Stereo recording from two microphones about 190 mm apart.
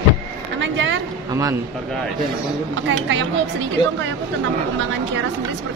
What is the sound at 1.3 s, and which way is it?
Speech, 15° right (ahead or behind).